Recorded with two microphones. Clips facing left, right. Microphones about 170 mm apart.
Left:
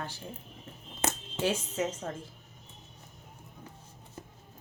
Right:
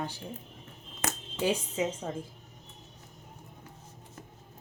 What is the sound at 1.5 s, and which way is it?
Speech, 10° right (ahead or behind).